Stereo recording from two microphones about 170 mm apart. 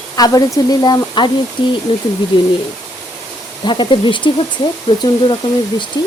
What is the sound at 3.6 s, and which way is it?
Speech, 30° left (ahead or behind).